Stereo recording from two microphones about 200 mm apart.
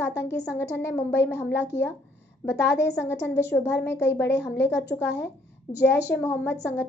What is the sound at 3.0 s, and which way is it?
A woman's voice, 10° left (ahead or behind).